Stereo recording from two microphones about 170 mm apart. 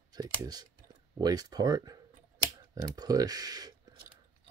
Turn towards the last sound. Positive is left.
turn(degrees=-20)  # may be behind; listen again after turning